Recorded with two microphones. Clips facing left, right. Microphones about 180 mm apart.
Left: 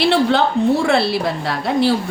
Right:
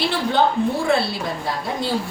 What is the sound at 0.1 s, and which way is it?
Speech, 75° left (ahead or behind).